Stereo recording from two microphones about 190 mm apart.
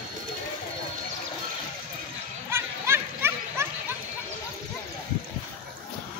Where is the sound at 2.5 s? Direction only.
15° right (ahead or behind).